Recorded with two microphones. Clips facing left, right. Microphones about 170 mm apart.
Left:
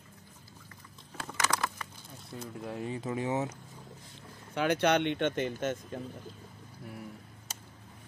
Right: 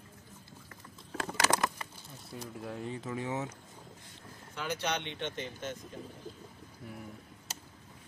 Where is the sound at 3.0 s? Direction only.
20° left (ahead or behind).